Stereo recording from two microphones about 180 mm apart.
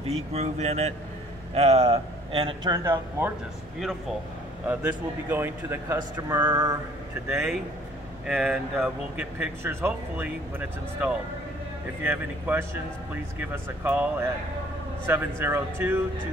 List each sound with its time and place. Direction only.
0.0 s speech: 35° right (ahead or behind); by 3.3 s 15° right (ahead or behind)
4.6 s a man's voice: 10° right (ahead or behind)
7.2 s a man's voice: 5° right (ahead or behind)
15.0 s a man's voice: 10° right (ahead or behind)